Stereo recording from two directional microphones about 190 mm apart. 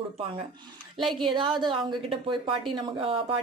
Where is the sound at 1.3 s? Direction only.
25° right (ahead or behind).